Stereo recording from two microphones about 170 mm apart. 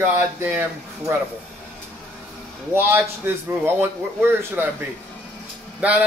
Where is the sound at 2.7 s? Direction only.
10° right (ahead or behind).